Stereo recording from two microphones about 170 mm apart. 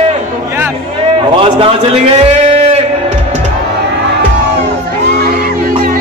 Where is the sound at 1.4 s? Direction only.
35° right (ahead or behind).